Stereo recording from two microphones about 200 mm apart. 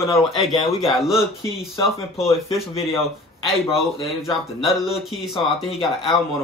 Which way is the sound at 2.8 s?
30° left (ahead or behind).